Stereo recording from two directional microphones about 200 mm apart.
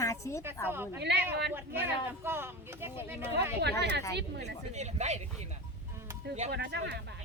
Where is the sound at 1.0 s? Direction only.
55° right (ahead or behind).